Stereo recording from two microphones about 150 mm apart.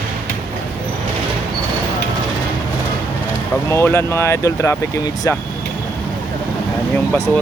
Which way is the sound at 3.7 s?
15° left (ahead or behind).